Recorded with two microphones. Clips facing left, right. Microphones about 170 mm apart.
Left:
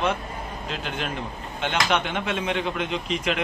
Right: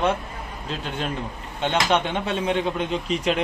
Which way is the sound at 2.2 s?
35° right (ahead or behind).